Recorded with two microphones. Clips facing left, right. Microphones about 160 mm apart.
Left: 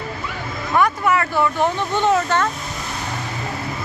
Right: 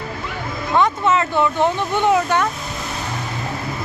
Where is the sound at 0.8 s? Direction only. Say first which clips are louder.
Right 1 dB; 20° right (ahead or behind).